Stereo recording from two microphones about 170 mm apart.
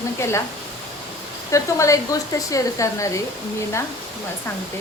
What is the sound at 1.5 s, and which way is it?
Speech, 20° left (ahead or behind).